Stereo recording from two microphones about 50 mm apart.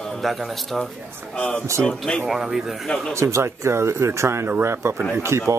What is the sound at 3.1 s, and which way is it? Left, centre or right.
Speech, right.